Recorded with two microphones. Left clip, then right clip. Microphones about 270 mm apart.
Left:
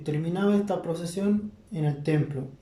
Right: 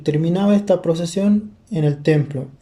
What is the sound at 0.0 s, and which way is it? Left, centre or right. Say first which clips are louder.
Speech: right 8 dB; right.